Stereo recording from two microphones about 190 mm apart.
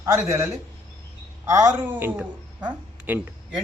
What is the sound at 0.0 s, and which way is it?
A woman's voice, 15° right (ahead or behind).